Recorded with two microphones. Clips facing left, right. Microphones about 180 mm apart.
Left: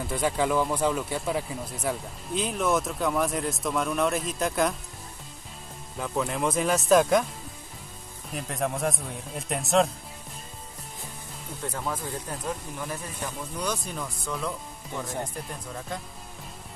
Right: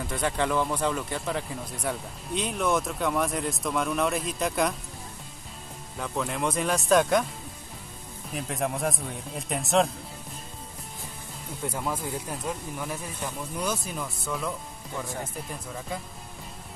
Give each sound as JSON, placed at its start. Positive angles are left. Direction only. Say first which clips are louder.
{"t": 0.0, "sound": "speech", "louder": "left 2 dB", "side_deg": 5}
{"t": 5.9, "sound": "speech", "louder": "left 2 dB", "side_deg": 0}
{"t": 8.3, "sound": "speech", "louder": "even", "side_deg": 0}
{"t": 11.6, "sound": "speech", "louder": "right 1 dB", "side_deg": -10}